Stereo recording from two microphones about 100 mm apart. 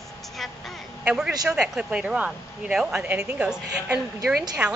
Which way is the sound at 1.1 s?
10° right (ahead or behind).